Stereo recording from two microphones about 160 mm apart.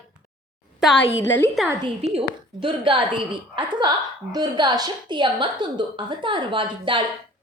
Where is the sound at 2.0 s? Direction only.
40° right (ahead or behind).